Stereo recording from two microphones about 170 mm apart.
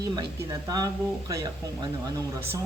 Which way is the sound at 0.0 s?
20° right (ahead or behind).